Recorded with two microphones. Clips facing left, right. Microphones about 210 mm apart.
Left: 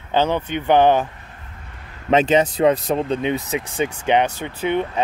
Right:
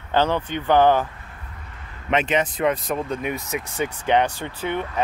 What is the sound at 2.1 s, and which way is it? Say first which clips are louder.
Speech: left 6 dB; 30° left (ahead or behind).